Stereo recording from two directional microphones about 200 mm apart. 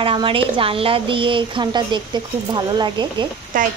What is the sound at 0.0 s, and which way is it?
A woman's voice, 25° right (ahead or behind).